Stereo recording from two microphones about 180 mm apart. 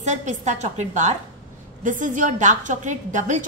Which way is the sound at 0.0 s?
40° right (ahead or behind).